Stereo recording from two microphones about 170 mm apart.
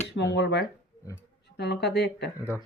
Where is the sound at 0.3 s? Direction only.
90° left.